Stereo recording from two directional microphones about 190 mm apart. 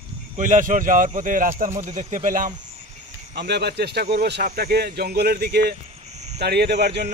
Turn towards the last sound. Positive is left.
turn(degrees=-60)  # may be behind; listen again after turning